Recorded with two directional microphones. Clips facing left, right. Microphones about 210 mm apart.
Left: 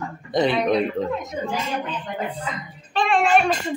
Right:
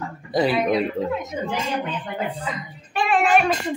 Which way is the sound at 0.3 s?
5° right (ahead or behind).